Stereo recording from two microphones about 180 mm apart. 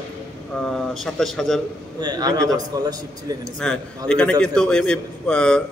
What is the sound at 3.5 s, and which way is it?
A man's voice, 5° left (ahead or behind).